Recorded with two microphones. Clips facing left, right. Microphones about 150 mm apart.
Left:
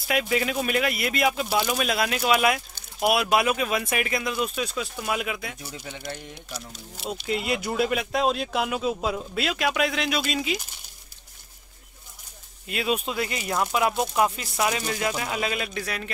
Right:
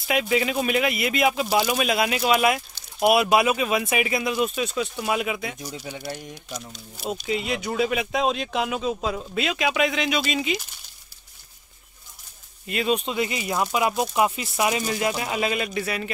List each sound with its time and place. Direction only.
0.0 s speech: centre (ahead or behind)
5.9 s speech: 15° right (ahead or behind)
7.1 s speech: centre (ahead or behind)
12.6 s speech: centre (ahead or behind)